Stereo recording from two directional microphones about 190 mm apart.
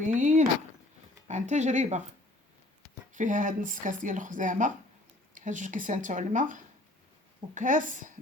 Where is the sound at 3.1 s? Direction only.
40° right (ahead or behind).